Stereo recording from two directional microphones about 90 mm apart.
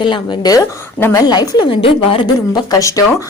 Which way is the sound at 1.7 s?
90° left.